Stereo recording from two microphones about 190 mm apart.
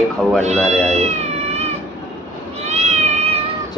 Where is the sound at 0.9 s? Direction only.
35° right (ahead or behind).